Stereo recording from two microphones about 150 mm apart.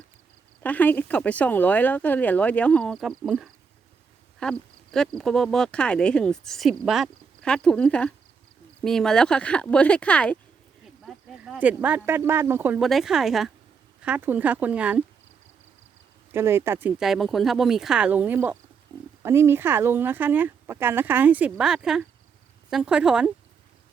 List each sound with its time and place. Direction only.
0.6 s speech: 10° left (ahead or behind)
11.0 s speech: 5° right (ahead or behind)
12.8 s speech: centre (ahead or behind)
16.3 s speech: 15° right (ahead or behind)
17.0 s speech: centre (ahead or behind)